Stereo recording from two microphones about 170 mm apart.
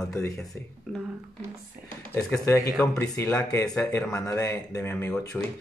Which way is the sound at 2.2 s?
10° left (ahead or behind).